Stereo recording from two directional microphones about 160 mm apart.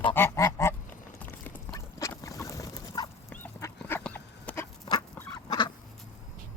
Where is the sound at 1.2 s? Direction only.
10° left (ahead or behind).